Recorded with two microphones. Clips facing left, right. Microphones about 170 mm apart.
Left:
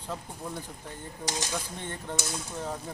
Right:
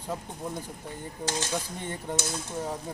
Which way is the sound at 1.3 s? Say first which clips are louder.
Right 2 dB; 15° left (ahead or behind).